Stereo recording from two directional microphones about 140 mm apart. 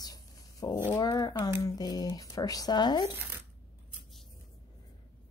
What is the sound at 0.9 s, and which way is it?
Speech, 25° left (ahead or behind).